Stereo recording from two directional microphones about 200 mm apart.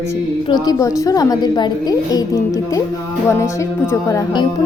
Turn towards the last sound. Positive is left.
turn(degrees=20)  # may be behind; listen again after turning